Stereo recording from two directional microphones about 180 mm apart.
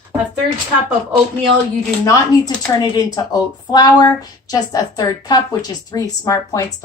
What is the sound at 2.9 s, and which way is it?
Speech, 20° left (ahead or behind).